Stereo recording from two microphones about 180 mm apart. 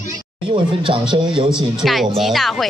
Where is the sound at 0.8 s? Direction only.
30° right (ahead or behind).